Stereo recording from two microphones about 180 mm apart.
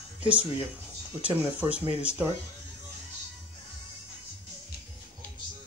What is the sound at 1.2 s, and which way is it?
Speech, 5° right (ahead or behind).